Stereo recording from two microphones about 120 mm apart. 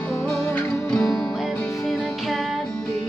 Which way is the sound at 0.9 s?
5° left (ahead or behind).